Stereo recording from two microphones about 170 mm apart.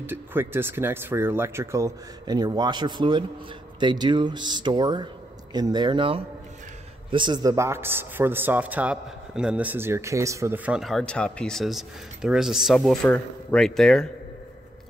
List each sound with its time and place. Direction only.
0.0 s a man's voice: 10° right (ahead or behind)